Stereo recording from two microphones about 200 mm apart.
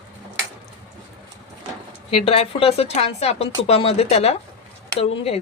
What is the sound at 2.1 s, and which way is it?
Speech, 30° left (ahead or behind).